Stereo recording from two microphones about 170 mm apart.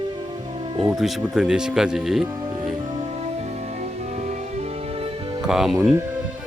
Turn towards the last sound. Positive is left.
turn(degrees=0)  # may be behind; listen again after turning